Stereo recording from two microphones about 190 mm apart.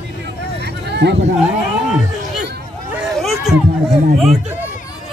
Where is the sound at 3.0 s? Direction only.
Centre (ahead or behind).